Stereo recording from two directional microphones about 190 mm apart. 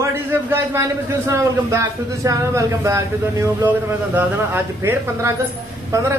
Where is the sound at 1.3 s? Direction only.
15° right (ahead or behind).